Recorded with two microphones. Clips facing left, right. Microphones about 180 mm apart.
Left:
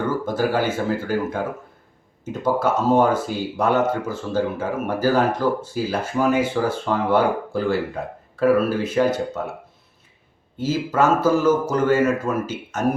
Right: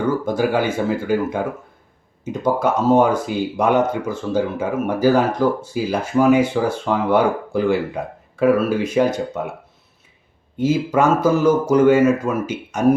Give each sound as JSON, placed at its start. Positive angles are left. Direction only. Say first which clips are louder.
{"t": 0.3, "sound": "speech", "louder": "right 2 dB", "side_deg": -15}
{"t": 10.6, "sound": "speech", "louder": "right 3 dB", "side_deg": -15}